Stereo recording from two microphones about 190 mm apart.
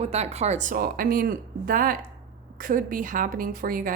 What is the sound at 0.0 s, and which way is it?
Speech, 35° right (ahead or behind).